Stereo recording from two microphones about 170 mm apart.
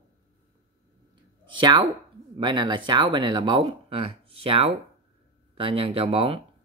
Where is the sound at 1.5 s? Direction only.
30° right (ahead or behind).